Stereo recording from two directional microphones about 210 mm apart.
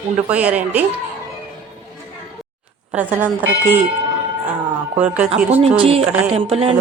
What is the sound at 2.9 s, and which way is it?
Speech, 10° right (ahead or behind).